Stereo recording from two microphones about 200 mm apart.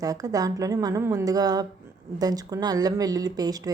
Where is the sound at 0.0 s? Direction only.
15° right (ahead or behind).